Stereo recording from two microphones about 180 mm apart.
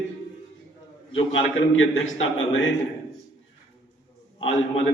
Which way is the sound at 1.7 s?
90° left.